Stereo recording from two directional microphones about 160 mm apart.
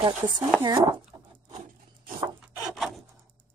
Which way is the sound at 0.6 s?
25° right (ahead or behind).